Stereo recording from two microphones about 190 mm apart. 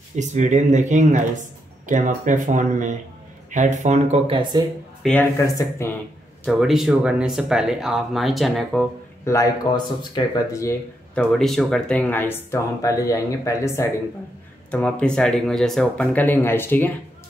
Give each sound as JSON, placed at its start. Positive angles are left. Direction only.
{"t": 0.1, "sound": "speech", "side_deg": -40}
{"t": 5.0, "sound": "speech", "side_deg": 10}
{"t": 6.4, "sound": "speech", "side_deg": 0}
{"t": 9.2, "sound": "speech", "side_deg": 15}
{"t": 11.1, "sound": "speech", "side_deg": 0}